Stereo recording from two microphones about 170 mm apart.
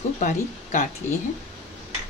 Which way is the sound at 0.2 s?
50° left (ahead or behind).